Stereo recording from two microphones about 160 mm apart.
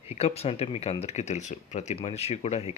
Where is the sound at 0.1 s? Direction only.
40° left (ahead or behind).